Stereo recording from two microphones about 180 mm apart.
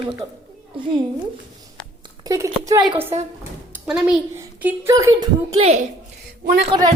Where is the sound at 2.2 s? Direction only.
20° right (ahead or behind).